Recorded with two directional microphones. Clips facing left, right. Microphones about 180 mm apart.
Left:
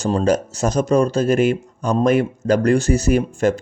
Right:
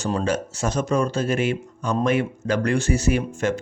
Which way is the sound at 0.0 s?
35° left (ahead or behind).